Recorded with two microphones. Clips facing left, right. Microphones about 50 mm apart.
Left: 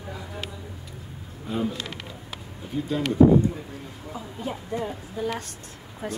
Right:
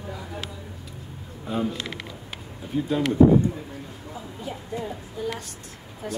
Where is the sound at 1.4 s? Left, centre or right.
Centre.